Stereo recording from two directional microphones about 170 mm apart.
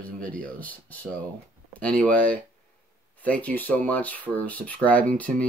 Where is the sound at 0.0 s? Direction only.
10° left (ahead or behind).